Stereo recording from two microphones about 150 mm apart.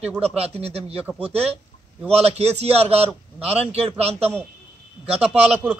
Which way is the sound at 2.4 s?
40° right (ahead or behind).